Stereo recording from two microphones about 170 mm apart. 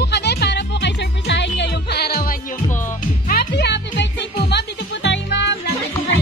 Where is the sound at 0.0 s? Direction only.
75° left (ahead or behind).